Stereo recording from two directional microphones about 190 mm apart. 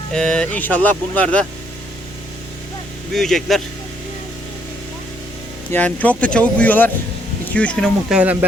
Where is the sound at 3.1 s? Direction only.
Centre (ahead or behind).